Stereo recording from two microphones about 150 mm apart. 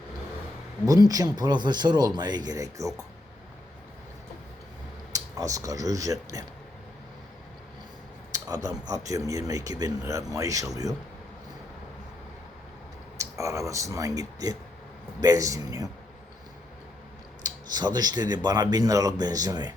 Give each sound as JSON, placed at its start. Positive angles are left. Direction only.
{"t": 0.9, "sound": "speech", "side_deg": -25}
{"t": 5.1, "sound": "speech", "side_deg": -25}
{"t": 8.3, "sound": "a sound", "side_deg": -25}
{"t": 8.9, "sound": "speech", "side_deg": -20}
{"t": 13.1, "sound": "speech", "side_deg": -20}
{"t": 17.4, "sound": "speech", "side_deg": -25}